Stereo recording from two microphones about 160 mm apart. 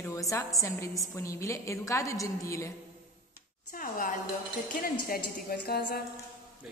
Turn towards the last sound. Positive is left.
turn(degrees=80)